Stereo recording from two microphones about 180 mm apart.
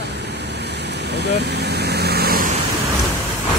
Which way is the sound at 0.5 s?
70° right (ahead or behind).